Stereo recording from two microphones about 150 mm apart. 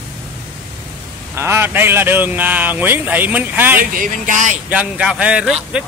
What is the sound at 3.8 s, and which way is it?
Speech, 65° right (ahead or behind).